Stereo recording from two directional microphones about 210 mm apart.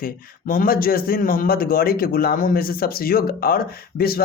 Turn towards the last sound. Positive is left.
turn(degrees=45)  # may be behind; listen again after turning